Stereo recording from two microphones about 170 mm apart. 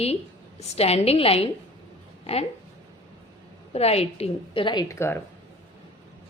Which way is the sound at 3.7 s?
35° left (ahead or behind).